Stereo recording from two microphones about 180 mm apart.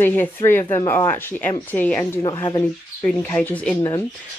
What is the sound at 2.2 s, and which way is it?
Speech, 25° left (ahead or behind).